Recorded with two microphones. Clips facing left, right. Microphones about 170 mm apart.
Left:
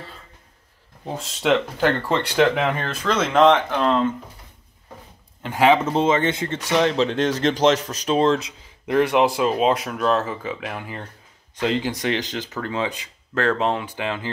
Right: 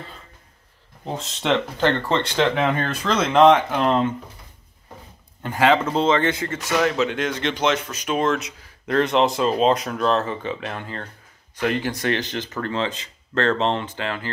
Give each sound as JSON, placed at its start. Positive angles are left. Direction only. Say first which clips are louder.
{"t": 1.0, "sound": "speech", "louder": "left 2 dB", "side_deg": 5}
{"t": 5.6, "sound": "speech", "louder": "left 1 dB", "side_deg": 20}
{"t": 8.8, "sound": "speech", "louder": "left 1 dB", "side_deg": 10}